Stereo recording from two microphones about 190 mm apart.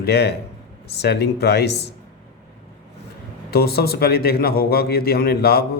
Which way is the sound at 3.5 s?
55° left (ahead or behind).